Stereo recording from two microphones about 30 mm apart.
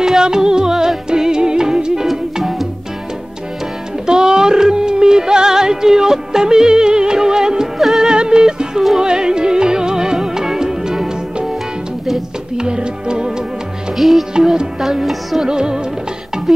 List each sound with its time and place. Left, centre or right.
0.2 s music: right
4.0 s music: right
12.5 s music: right
13.9 s music: centre
14.4 s music: right
16.5 s music: centre